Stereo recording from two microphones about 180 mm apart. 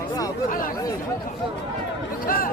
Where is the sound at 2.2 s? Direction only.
50° left (ahead or behind).